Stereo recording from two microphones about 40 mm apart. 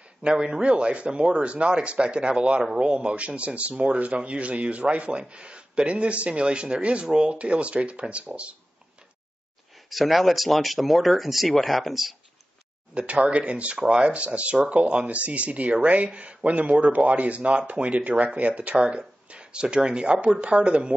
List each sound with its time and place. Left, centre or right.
0.2 s speech: right
9.8 s speech: centre
13.0 s speech: right